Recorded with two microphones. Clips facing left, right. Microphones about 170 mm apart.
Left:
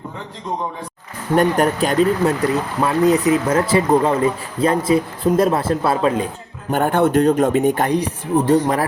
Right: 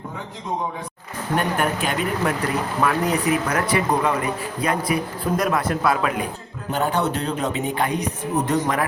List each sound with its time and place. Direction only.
1.4 s speech: 40° left (ahead or behind)
6.7 s speech: 55° left (ahead or behind); by 8.5 s 30° left (ahead or behind)